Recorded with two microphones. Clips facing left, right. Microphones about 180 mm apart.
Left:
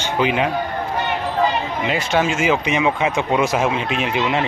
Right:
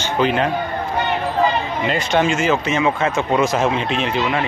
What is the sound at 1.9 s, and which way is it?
Speech, 5° left (ahead or behind).